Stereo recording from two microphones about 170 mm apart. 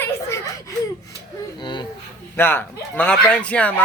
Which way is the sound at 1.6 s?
25° left (ahead or behind).